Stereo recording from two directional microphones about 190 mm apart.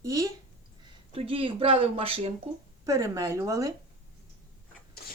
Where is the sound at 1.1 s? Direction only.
30° right (ahead or behind).